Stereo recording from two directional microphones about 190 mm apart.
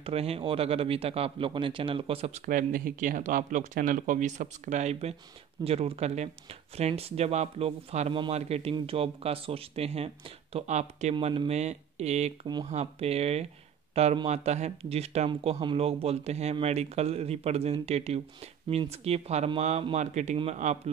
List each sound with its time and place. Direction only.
0.0 s speech: 30° right (ahead or behind)